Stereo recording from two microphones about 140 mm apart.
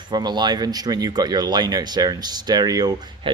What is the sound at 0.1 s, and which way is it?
Speech, 30° right (ahead or behind).